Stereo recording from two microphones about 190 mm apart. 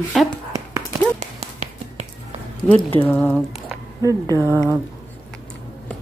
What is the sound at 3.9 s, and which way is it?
Speech, 15° right (ahead or behind).